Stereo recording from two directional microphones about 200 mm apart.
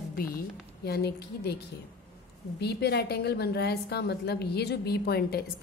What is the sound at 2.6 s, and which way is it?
A woman's voice, 55° left (ahead or behind).